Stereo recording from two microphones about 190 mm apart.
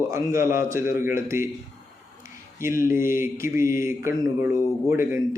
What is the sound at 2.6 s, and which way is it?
Speech, 15° right (ahead or behind).